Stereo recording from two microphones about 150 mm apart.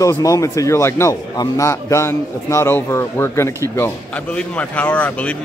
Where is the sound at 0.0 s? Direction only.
20° left (ahead or behind).